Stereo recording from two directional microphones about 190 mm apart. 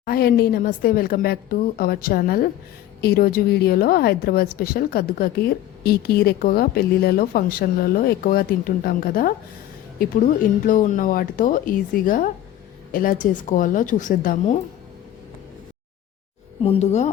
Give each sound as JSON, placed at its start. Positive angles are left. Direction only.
{"t": 0.0, "sound": "speech", "side_deg": 50}
{"t": 10.7, "sound": "speech", "side_deg": 45}
{"t": 16.6, "sound": "speech", "side_deg": 35}